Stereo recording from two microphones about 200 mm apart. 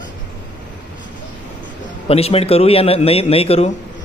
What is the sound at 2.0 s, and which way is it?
A man's voice, 30° left (ahead or behind).